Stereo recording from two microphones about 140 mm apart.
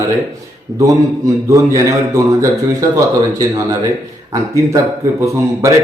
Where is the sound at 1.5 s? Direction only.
20° right (ahead or behind).